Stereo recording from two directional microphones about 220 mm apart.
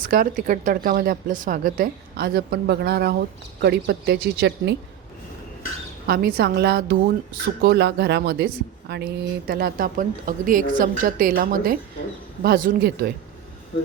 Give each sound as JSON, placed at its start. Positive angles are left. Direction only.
{"t": 0.1, "sound": "a woman's voice", "side_deg": -40}
{"t": 6.1, "sound": "a woman's voice", "side_deg": -45}